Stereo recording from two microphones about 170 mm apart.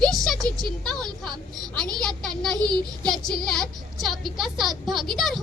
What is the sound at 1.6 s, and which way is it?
Speech, 25° right (ahead or behind).